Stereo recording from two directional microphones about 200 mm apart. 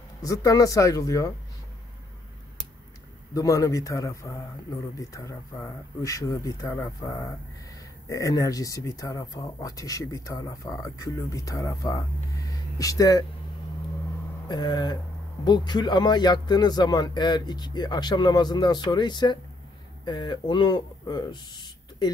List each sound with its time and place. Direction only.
0.2 s speech: 15° left (ahead or behind)
3.3 s speech: 15° left (ahead or behind)
14.5 s a man's voice: 20° left (ahead or behind)